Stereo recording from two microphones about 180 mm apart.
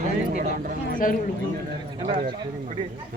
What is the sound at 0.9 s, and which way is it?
Speech, 50° left (ahead or behind).